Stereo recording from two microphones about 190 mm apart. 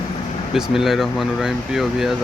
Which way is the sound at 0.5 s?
Centre (ahead or behind).